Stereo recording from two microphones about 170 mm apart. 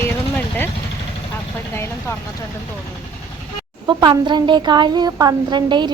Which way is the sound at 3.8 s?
25° right (ahead or behind).